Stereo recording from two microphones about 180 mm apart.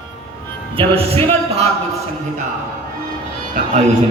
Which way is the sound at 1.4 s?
35° right (ahead or behind).